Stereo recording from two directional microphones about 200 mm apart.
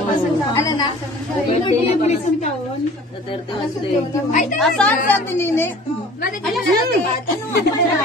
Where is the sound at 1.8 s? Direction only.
35° left (ahead or behind).